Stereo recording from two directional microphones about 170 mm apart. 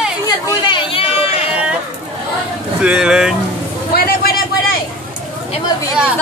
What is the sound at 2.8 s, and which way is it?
Speech, 5° right (ahead or behind).